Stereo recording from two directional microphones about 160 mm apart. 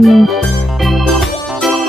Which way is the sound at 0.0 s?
Centre (ahead or behind).